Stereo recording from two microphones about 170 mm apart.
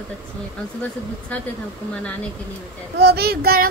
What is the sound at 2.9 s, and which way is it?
Speech, 70° right (ahead or behind).